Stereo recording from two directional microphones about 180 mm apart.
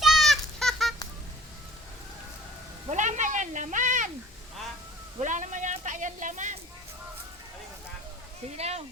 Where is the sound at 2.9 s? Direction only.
45° right (ahead or behind).